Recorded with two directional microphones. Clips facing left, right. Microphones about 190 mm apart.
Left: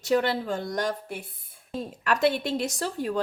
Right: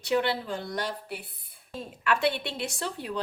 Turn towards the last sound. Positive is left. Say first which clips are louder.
# left 5 dB
turn(degrees=45)  # may be behind; listen again after turning